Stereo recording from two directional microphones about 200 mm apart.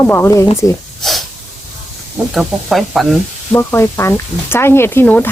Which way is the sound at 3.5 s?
10° left (ahead or behind).